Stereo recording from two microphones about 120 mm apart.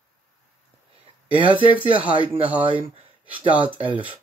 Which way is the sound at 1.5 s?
15° right (ahead or behind).